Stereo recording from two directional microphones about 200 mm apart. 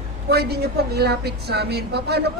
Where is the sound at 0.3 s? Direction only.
55° right (ahead or behind).